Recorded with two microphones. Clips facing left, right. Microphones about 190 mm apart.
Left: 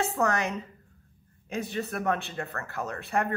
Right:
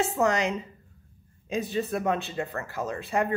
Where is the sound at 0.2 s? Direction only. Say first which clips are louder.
Right 3 dB; 15° right (ahead or behind).